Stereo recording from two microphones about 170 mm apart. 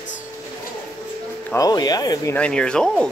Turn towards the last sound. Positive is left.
turn(degrees=5)  # may be behind; listen again after turning